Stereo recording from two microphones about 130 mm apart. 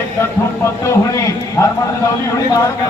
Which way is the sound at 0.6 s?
20° left (ahead or behind).